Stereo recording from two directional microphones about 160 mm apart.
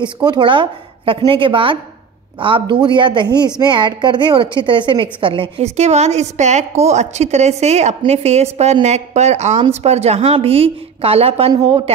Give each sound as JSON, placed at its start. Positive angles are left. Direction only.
{"t": 0.0, "sound": "a woman's voice", "side_deg": -30}